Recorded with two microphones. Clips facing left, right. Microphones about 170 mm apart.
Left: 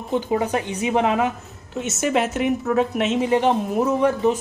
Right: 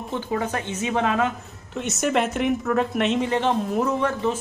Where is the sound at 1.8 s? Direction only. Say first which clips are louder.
Left 1 dB; centre (ahead or behind).